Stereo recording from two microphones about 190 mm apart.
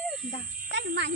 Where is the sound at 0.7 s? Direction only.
65° right (ahead or behind).